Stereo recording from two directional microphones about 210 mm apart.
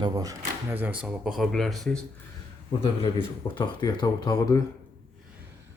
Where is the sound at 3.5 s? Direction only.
20° left (ahead or behind).